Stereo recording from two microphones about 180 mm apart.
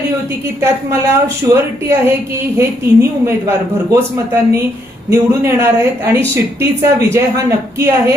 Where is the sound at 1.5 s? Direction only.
15° right (ahead or behind).